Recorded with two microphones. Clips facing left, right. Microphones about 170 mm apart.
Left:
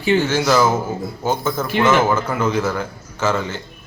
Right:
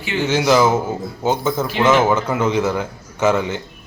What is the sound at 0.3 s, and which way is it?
A man's voice, 15° right (ahead or behind).